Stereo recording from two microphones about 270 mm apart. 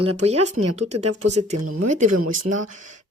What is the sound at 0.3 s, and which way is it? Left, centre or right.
Speech, right.